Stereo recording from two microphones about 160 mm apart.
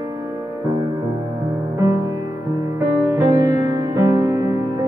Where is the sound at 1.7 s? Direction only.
20° right (ahead or behind).